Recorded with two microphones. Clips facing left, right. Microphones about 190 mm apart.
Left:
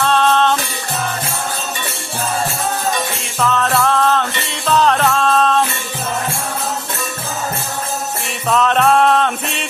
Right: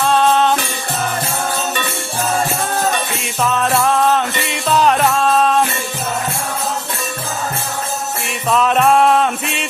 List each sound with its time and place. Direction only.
0.0 s music: 10° right (ahead or behind)
3.4 s music: 15° right (ahead or behind)
8.4 s jingle bell: 5° right (ahead or behind)